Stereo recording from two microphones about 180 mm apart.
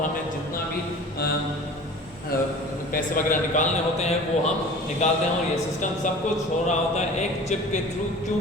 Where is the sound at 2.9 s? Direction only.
50° left (ahead or behind).